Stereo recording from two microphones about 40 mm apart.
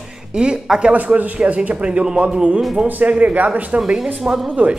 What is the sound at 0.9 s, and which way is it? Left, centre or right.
A man's voice, right.